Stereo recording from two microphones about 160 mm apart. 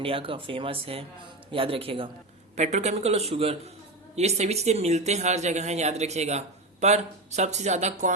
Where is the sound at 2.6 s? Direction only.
45° right (ahead or behind).